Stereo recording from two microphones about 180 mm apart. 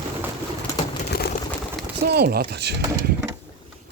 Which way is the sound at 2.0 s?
60° right (ahead or behind).